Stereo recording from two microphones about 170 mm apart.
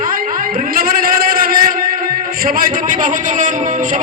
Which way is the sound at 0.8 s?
60° right (ahead or behind).